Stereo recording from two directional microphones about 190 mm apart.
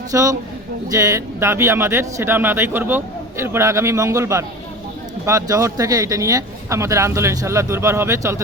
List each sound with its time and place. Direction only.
0.1 s a man's voice: 15° right (ahead or behind)